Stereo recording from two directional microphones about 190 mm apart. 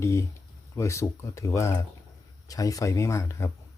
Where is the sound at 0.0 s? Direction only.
15° left (ahead or behind).